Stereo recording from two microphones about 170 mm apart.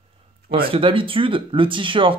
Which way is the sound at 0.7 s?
30° right (ahead or behind).